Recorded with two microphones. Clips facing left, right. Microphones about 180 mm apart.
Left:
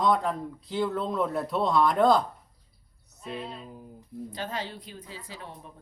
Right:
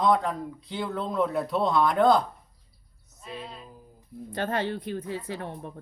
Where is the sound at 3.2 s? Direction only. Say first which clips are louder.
Left 3 dB; centre (ahead or behind).